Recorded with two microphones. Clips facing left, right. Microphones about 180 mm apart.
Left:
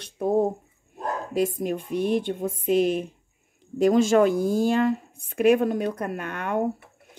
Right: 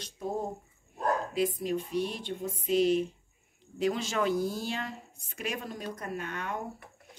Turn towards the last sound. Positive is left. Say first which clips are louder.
# left 9 dB
turn(degrees=60)  # may be behind; listen again after turning